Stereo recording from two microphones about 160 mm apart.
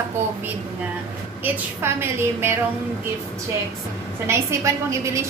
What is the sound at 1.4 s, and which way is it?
A woman's voice, 15° right (ahead or behind).